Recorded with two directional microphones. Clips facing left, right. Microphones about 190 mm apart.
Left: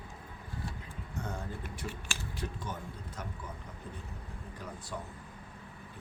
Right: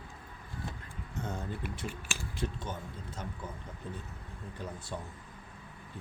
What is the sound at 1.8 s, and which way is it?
Speech, 25° right (ahead or behind).